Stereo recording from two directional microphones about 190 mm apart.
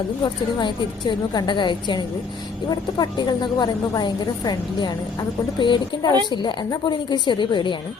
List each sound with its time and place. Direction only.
0.6 s speech: 25° left (ahead or behind)